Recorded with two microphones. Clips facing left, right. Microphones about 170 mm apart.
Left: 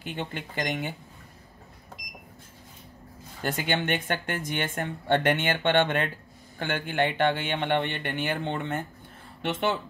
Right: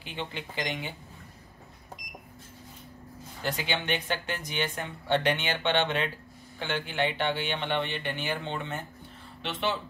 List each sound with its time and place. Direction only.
0.0 s speech: 50° left (ahead or behind)
3.4 s speech: 50° left (ahead or behind)